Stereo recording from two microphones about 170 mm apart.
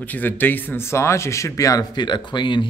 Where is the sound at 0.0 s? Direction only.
10° left (ahead or behind).